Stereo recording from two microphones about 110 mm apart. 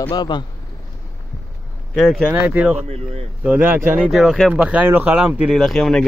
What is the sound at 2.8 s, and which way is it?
Speech, 70° right (ahead or behind).